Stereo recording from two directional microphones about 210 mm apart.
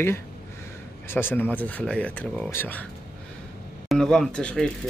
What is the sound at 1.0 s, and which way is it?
Speech, 10° left (ahead or behind).